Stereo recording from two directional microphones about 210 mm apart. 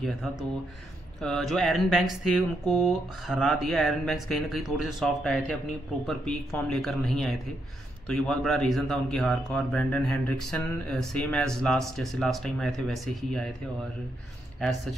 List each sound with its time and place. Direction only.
0.0 s speech: centre (ahead or behind)